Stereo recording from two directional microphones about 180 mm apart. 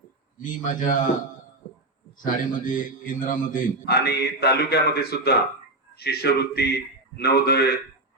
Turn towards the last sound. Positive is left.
turn(degrees=65)  # may be behind; listen again after turning